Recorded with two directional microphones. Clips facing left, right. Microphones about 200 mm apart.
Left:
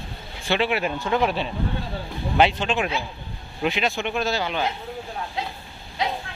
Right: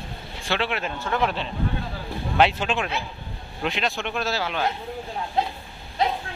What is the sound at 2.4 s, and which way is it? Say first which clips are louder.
Speech: left 1 dB; 5° right (ahead or behind).